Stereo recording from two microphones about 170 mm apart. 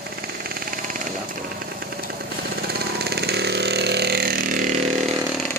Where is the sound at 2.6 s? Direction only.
70° right (ahead or behind); by 4.8 s 50° right (ahead or behind).